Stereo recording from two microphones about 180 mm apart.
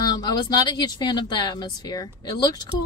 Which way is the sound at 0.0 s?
20° left (ahead or behind).